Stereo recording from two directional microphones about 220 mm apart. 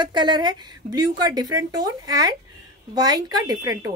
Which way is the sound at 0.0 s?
20° right (ahead or behind).